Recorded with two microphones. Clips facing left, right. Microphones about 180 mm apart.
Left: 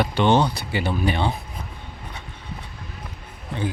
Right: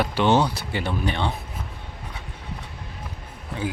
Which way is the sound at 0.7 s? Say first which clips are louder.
Left 3 dB; 5° left (ahead or behind).